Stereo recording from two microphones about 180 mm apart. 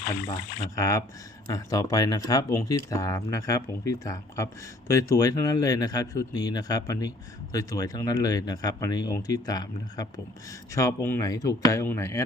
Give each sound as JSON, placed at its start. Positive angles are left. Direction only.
{"t": 0.8, "sound": "speech", "side_deg": 15}